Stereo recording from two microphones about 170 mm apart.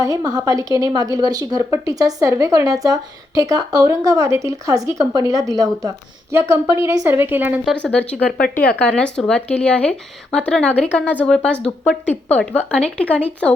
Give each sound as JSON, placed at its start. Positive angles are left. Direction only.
{"t": 0.0, "sound": "a woman's voice", "side_deg": -20}
{"t": 7.6, "sound": "a woman's voice", "side_deg": 5}